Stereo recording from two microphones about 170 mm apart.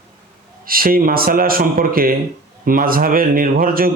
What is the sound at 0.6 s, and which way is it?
Speech, 60° right (ahead or behind).